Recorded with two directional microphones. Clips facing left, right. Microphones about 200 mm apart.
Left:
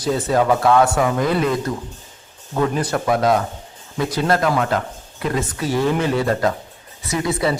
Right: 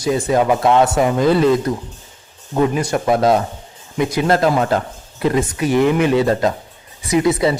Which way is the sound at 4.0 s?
15° right (ahead or behind).